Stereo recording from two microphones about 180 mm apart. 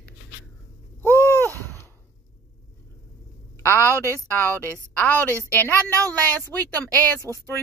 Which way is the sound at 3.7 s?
10° left (ahead or behind).